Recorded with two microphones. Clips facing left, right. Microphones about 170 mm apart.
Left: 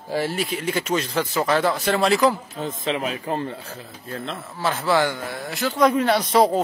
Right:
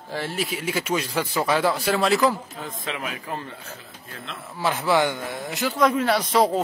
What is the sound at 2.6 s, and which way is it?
Speech, 25° left (ahead or behind).